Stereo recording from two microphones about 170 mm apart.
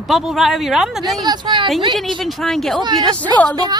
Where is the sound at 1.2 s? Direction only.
25° right (ahead or behind).